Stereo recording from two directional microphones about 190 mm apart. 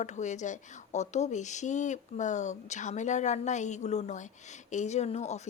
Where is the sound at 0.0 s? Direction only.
40° left (ahead or behind).